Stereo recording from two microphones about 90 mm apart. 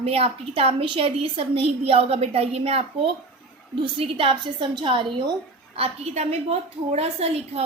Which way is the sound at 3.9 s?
85° right.